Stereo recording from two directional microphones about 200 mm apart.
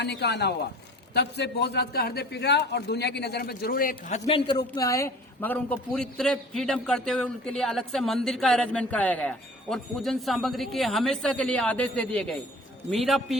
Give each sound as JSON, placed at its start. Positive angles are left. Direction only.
{"t": 0.0, "sound": "a man's voice", "side_deg": 55}